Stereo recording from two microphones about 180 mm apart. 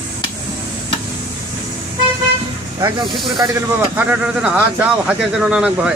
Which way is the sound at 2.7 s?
25° right (ahead or behind).